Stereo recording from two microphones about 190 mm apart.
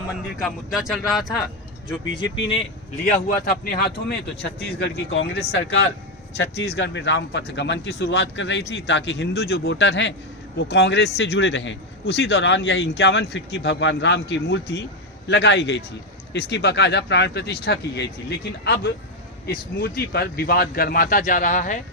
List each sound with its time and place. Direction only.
0.4 s speech: centre (ahead or behind)
2.3 s speech: 30° left (ahead or behind)
3.1 s a man's voice: 45° left (ahead or behind)
4.8 s a man's voice: 65° left (ahead or behind); by 21.8 s 40° left (ahead or behind)